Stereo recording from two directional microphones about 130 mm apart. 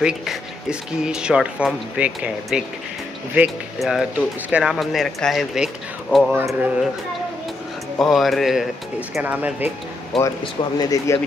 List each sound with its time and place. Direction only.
0.0 s speech: 5° right (ahead or behind)
3.8 s speech: 5° right (ahead or behind)
6.3 s speech: 15° right (ahead or behind)
8.0 s speech: centre (ahead or behind)
9.2 s speech: 15° right (ahead or behind)
10.4 s speech: 30° left (ahead or behind)